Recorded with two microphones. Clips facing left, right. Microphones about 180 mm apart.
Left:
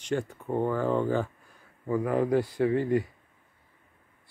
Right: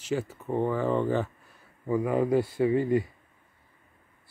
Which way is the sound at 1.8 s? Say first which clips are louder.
Right 1 dB; 10° right (ahead or behind).